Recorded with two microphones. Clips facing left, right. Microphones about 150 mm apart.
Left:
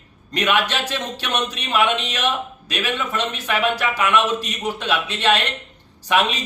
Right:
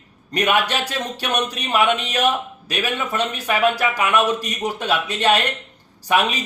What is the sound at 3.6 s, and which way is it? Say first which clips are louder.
Speech: right 3 dB; 40° right (ahead or behind).